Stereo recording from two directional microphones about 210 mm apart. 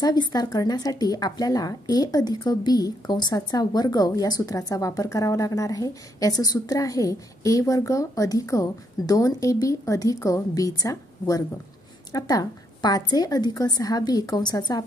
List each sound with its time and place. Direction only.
0.0 s speech: 20° left (ahead or behind)